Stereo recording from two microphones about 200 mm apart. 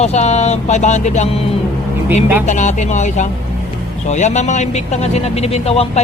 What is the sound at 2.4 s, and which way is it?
Speech, 35° left (ahead or behind).